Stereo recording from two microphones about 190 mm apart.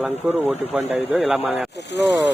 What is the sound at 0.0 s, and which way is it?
Speech, 10° right (ahead or behind).